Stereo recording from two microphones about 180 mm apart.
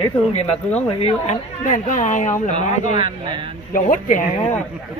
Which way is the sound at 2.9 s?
30° right (ahead or behind).